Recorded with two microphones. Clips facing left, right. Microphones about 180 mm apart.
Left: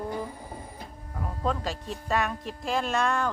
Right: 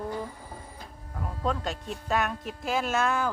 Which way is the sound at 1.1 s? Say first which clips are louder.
Left 1 dB; centre (ahead or behind).